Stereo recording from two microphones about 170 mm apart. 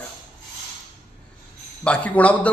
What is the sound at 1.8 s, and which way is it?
Speech, 10° left (ahead or behind).